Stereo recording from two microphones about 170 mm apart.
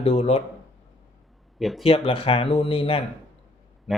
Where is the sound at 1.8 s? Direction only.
35° left (ahead or behind).